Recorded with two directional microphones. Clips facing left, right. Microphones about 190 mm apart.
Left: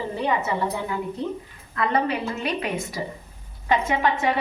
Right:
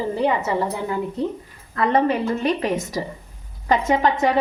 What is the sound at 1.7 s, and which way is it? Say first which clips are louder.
A woman's voice: right 5 dB; 45° right (ahead or behind).